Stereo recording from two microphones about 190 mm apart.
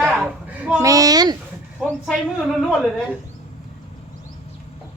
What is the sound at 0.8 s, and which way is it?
Speech, 20° right (ahead or behind).